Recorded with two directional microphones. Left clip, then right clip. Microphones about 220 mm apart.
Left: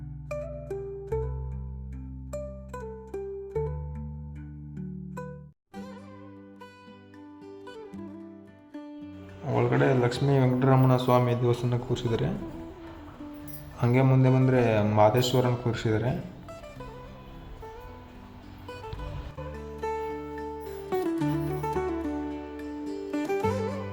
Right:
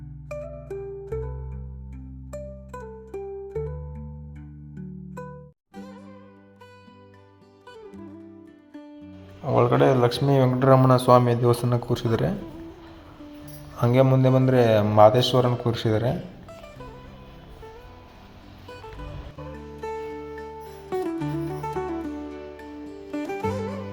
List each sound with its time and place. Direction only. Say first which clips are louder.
0.3 s music: even; centre (ahead or behind)
2.3 s music: even; centre (ahead or behind)
7.8 s music: even; centre (ahead or behind)
9.6 s speech: right 6 dB; 15° right (ahead or behind)
13.7 s a man's voice: right 5 dB; 10° right (ahead or behind)
18.7 s music: even; centre (ahead or behind)